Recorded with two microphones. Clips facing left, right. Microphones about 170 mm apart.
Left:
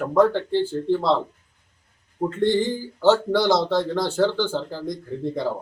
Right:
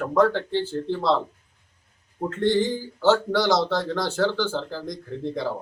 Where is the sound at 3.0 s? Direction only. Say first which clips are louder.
Left 2 dB; 15° left (ahead or behind).